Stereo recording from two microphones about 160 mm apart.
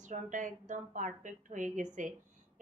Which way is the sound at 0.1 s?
50° right (ahead or behind).